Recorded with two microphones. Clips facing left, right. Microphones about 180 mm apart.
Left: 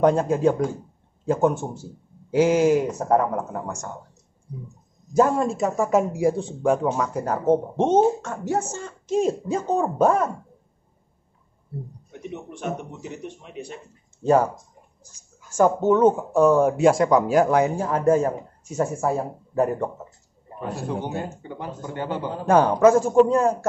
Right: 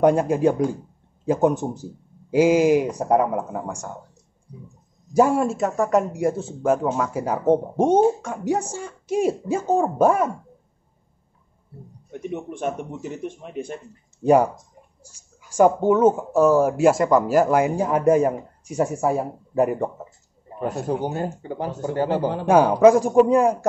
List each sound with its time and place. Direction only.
0.0 s speech: 10° right (ahead or behind)
5.1 s speech: 10° right (ahead or behind)
12.2 s a man's voice: 50° right (ahead or behind)
14.2 s speech: 15° right (ahead or behind)
20.8 s speech: 40° right (ahead or behind)
22.5 s speech: 10° right (ahead or behind)